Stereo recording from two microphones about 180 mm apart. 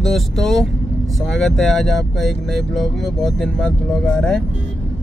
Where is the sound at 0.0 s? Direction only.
Centre (ahead or behind).